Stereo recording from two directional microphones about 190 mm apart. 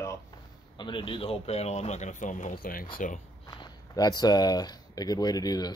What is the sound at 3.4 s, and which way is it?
Speech, 20° left (ahead or behind).